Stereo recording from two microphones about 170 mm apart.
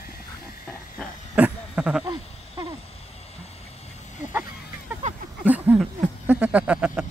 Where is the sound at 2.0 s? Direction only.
30° right (ahead or behind).